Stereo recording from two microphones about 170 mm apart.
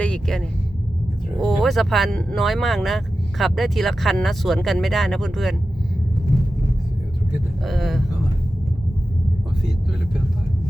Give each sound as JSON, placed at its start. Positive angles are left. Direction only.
{"t": 0.0, "sound": "vehicle", "side_deg": 5}
{"t": 1.4, "sound": "speech", "side_deg": 0}
{"t": 7.6, "sound": "speech", "side_deg": 0}